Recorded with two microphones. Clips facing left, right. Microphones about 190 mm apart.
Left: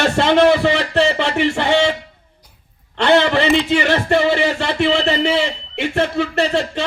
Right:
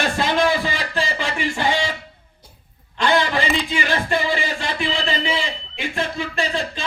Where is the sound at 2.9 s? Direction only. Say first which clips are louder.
Left 6 dB; 70° left (ahead or behind).